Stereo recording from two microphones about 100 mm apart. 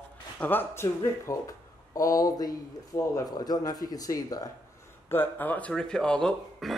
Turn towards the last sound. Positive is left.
turn(degrees=10)  # may be behind; listen again after turning